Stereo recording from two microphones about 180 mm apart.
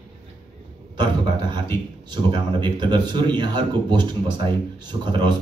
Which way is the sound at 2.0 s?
25° right (ahead or behind).